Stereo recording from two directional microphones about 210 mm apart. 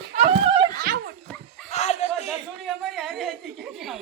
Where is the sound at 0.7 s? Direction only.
45° right (ahead or behind).